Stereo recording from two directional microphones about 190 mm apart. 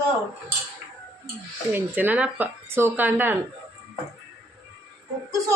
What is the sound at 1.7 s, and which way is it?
A woman's voice, 10° right (ahead or behind).